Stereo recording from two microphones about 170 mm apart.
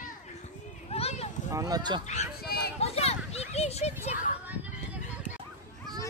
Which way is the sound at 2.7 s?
35° left (ahead or behind).